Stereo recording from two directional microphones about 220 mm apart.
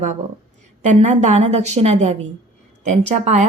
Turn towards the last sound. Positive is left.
turn(degrees=-30)  # may be behind; listen again after turning